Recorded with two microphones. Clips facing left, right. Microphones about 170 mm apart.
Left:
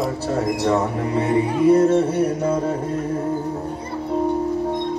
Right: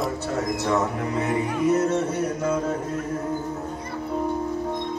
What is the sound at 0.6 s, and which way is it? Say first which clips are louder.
Music: left 2 dB; 30° left (ahead or behind).